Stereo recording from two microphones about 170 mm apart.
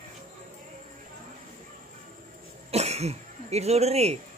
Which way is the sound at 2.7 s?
40° right (ahead or behind).